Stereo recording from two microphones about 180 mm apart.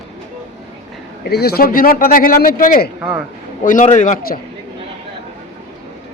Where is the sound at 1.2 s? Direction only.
60° left (ahead or behind).